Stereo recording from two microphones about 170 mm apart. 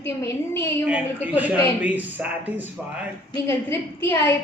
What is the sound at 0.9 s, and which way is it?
Speech, 10° right (ahead or behind).